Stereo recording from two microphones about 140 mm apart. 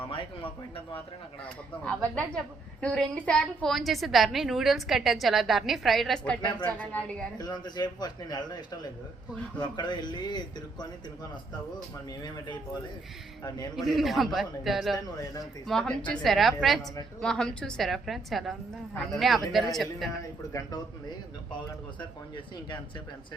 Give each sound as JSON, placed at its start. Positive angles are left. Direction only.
{"t": 0.1, "sound": "speech", "side_deg": 40}
{"t": 1.8, "sound": "a woman's voice", "side_deg": 10}
{"t": 7.3, "sound": "a man's voice", "side_deg": 30}
{"t": 9.6, "sound": "speech", "side_deg": 30}
{"t": 12.2, "sound": "speech", "side_deg": 30}
{"t": 13.7, "sound": "a woman's voice", "side_deg": 0}
{"t": 14.9, "sound": "a man's voice", "side_deg": 25}
{"t": 15.6, "sound": "a woman's voice", "side_deg": 5}
{"t": 20.5, "sound": "a man's voice", "side_deg": 25}